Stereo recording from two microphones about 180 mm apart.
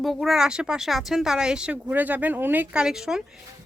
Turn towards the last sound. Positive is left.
turn(degrees=-5)  # may be behind; listen again after turning